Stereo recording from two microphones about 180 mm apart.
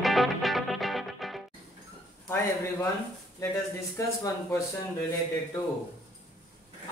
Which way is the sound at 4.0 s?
15° left (ahead or behind).